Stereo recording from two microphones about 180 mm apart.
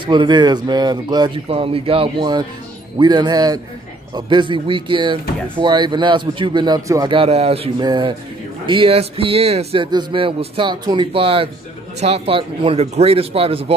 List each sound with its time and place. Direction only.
0.0 s a man's voice: 25° right (ahead or behind)
7.2 s a man's voice: 35° right (ahead or behind)